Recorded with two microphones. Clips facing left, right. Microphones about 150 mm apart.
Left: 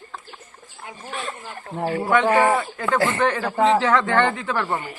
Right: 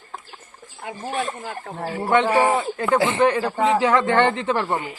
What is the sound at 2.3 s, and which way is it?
Speech, 20° right (ahead or behind).